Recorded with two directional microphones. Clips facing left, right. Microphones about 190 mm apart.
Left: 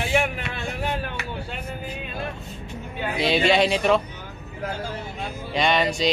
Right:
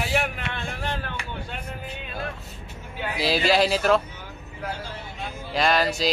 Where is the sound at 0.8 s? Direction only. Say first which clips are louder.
Left 3 dB; 10° left (ahead or behind).